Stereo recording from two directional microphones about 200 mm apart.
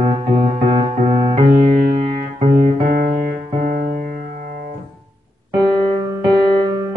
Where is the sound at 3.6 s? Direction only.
45° right (ahead or behind).